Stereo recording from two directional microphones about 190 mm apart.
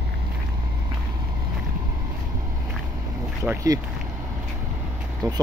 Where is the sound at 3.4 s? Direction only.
15° right (ahead or behind).